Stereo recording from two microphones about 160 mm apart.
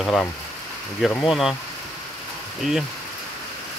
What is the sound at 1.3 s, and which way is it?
Speech, centre (ahead or behind).